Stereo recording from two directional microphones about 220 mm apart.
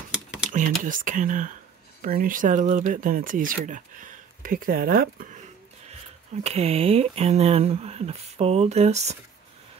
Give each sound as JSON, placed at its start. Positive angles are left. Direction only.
{"t": 0.1, "sound": "computer keyboard", "side_deg": -5}
{"t": 0.8, "sound": "speech", "side_deg": -35}